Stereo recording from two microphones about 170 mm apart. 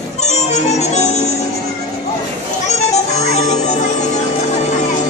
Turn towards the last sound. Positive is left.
turn(degrees=40)  # may be behind; listen again after turning